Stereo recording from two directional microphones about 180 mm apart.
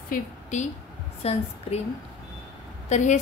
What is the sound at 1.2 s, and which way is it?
Speech, 35° left (ahead or behind).